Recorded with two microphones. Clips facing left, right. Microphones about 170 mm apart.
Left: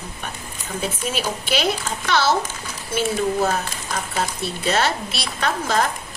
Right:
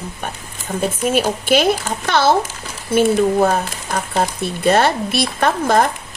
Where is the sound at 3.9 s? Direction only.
55° right (ahead or behind).